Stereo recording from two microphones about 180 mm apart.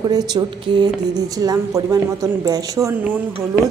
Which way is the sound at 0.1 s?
20° right (ahead or behind).